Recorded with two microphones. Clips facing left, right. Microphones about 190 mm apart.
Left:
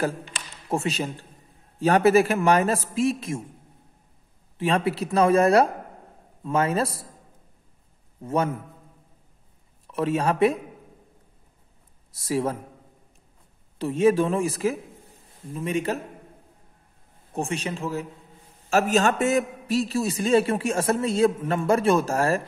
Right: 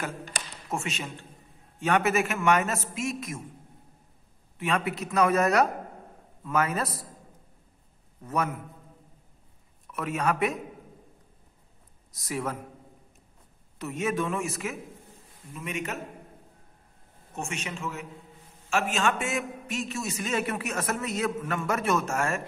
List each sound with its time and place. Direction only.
0.7 s a man's voice: 35° left (ahead or behind)
4.6 s a man's voice: 30° left (ahead or behind)
8.2 s speech: 30° left (ahead or behind)
9.8 s speech: 30° left (ahead or behind)
12.1 s speech: 30° left (ahead or behind)
13.7 s a man's voice: 30° left (ahead or behind)
17.3 s a man's voice: 35° left (ahead or behind)